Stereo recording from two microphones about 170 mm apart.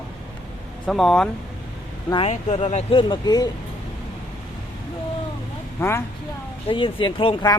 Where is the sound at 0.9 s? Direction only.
Centre (ahead or behind).